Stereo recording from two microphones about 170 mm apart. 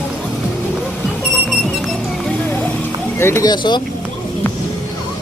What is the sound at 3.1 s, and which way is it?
Speech, 15° left (ahead or behind).